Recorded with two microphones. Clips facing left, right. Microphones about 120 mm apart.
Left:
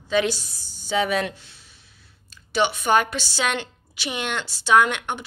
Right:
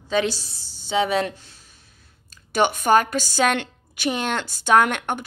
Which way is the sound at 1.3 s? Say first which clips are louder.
Right 1 dB; 40° right (ahead or behind).